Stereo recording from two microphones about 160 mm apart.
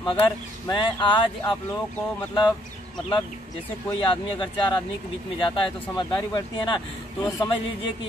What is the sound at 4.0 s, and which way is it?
Speech, 30° left (ahead or behind).